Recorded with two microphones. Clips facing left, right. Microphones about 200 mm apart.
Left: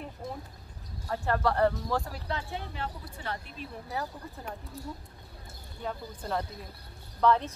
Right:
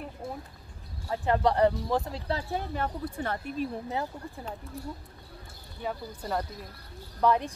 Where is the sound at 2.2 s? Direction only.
40° right (ahead or behind).